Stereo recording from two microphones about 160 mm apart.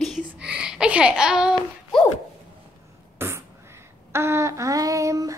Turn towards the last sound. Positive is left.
turn(degrees=-20)  # may be behind; listen again after turning